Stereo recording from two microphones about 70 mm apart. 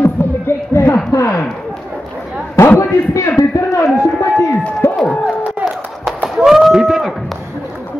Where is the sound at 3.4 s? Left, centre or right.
Left.